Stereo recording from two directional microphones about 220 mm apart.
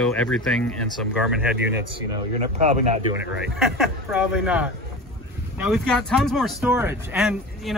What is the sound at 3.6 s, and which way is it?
Speech, centre (ahead or behind).